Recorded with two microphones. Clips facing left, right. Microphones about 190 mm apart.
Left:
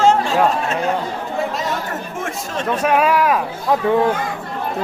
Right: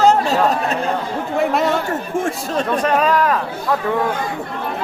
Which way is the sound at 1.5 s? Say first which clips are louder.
Right 6 dB; 60° right (ahead or behind).